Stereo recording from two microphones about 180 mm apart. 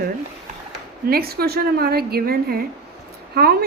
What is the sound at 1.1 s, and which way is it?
A woman's voice, 55° right (ahead or behind).